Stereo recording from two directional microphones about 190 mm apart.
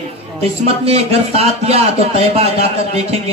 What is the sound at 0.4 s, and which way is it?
Speech, 30° right (ahead or behind).